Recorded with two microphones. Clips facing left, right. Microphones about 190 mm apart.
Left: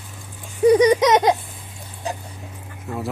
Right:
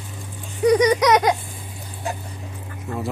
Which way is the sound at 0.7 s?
25° left (ahead or behind).